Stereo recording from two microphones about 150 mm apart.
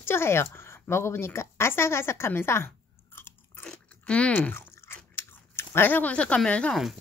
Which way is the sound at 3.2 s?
15° left (ahead or behind).